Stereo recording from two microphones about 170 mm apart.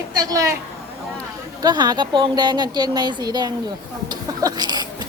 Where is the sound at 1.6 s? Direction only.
25° right (ahead or behind).